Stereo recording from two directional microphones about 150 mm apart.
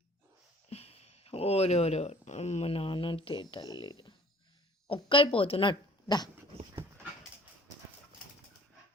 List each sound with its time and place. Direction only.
0.7 s speech: 45° left (ahead or behind)